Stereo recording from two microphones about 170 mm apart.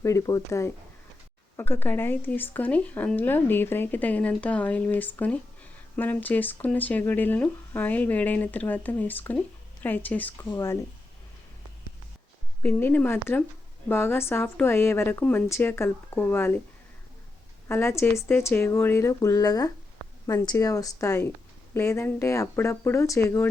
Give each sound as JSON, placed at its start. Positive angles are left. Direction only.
{"t": 0.0, "sound": "speech", "side_deg": 20}
{"t": 12.6, "sound": "speech", "side_deg": 10}
{"t": 17.7, "sound": "speech", "side_deg": 15}